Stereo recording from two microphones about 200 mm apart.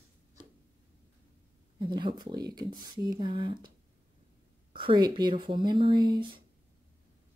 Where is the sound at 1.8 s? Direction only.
25° right (ahead or behind).